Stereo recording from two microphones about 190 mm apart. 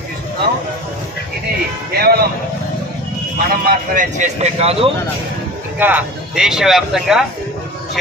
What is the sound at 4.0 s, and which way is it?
Speech, 40° right (ahead or behind).